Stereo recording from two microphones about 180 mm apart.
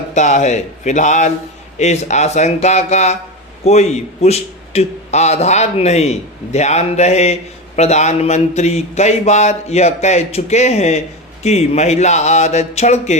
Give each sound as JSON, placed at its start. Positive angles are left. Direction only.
{"t": 0.1, "sound": "a man's voice", "side_deg": 40}